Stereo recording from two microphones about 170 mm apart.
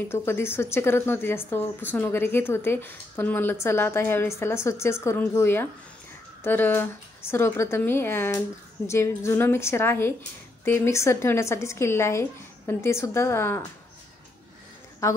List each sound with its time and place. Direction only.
0.1 s a woman's voice: 15° left (ahead or behind)
15.0 s a woman's voice: 20° left (ahead or behind)